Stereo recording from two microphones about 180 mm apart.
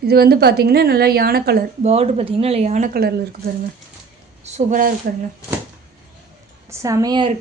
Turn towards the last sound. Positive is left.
turn(degrees=-25)  # may be behind; listen again after turning